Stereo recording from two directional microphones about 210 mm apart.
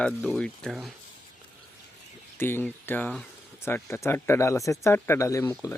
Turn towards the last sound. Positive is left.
turn(degrees=15)  # may be behind; listen again after turning